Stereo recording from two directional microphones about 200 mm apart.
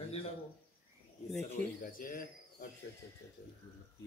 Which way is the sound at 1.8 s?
45° left (ahead or behind).